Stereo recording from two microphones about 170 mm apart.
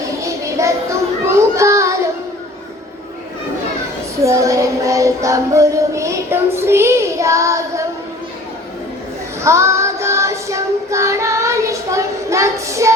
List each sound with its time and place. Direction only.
0.2 s a sound: 20° right (ahead or behind)
1.3 s child singing: 15° right (ahead or behind)
4.2 s music: 20° right (ahead or behind)
9.4 s child singing: 15° right (ahead or behind)